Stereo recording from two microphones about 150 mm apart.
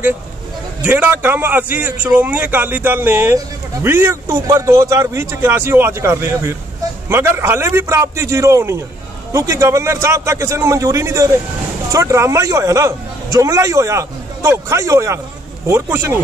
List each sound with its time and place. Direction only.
0.8 s a man's voice: 10° right (ahead or behind)